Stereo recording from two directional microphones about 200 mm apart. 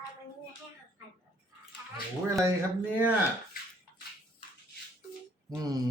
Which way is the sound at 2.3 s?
15° right (ahead or behind).